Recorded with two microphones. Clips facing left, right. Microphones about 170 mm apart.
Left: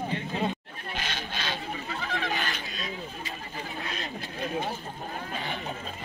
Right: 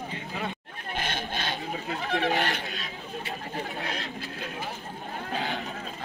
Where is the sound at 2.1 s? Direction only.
65° right (ahead or behind).